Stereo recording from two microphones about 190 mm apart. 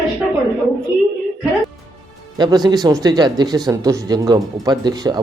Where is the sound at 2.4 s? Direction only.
20° right (ahead or behind).